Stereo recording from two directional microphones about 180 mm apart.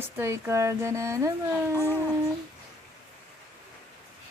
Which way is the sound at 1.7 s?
15° left (ahead or behind).